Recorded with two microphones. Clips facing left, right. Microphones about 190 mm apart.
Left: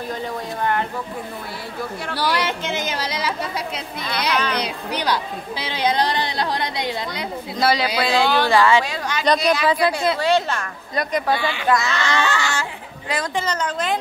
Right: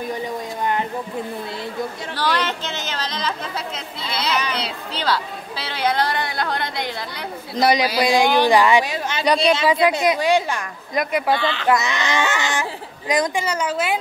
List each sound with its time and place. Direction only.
0.1 s a sound: 15° right (ahead or behind)
2.1 s speech: 10° left (ahead or behind)
7.5 s speech: 20° right (ahead or behind)
9.4 s speech: 25° right (ahead or behind)
11.3 s speech: 10° left (ahead or behind)
11.7 s speech: 20° right (ahead or behind)